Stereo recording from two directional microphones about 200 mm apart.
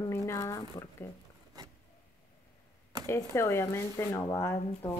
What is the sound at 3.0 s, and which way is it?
Speech, 15° left (ahead or behind).